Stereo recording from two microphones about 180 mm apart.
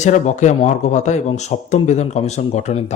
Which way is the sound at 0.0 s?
40° left (ahead or behind).